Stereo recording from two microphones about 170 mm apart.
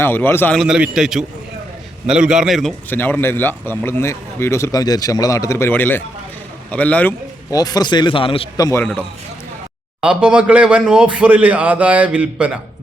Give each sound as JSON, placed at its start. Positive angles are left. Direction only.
{"t": 0.0, "sound": "a man's voice", "side_deg": 10}
{"t": 2.9, "sound": "a man's voice", "side_deg": 10}
{"t": 7.5, "sound": "a man's voice", "side_deg": 25}
{"t": 8.8, "sound": "a man's voice", "side_deg": 10}
{"t": 10.0, "sound": "a man's voice", "side_deg": -5}